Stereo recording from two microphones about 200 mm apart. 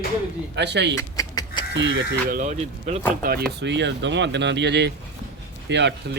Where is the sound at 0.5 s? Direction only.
60° right (ahead or behind).